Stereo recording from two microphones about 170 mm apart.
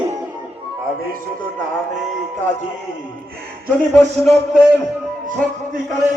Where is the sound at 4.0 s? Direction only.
45° right (ahead or behind).